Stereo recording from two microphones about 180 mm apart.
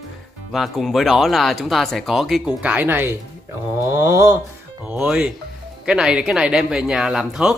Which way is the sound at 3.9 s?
15° right (ahead or behind).